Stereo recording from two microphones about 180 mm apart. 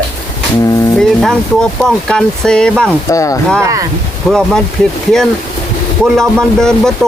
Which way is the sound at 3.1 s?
20° left (ahead or behind).